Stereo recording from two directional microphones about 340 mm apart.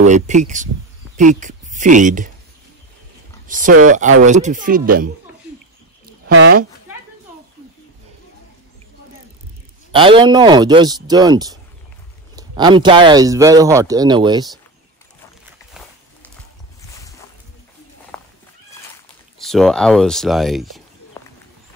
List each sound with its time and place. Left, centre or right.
0.0 s speech: right
3.4 s speech: right
6.3 s speech: right
9.9 s speech: centre
18.1 s horse: centre
19.3 s speech: centre